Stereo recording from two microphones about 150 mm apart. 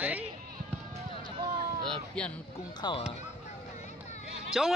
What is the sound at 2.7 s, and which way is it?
Speech, 30° left (ahead or behind).